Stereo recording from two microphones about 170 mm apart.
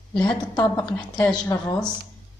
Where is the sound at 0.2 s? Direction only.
25° left (ahead or behind).